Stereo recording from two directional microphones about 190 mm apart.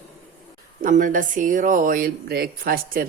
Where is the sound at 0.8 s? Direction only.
45° right (ahead or behind).